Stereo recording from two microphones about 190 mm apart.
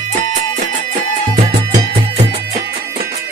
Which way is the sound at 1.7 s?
30° right (ahead or behind).